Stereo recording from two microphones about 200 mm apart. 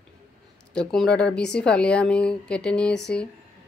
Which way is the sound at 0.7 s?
5° left (ahead or behind).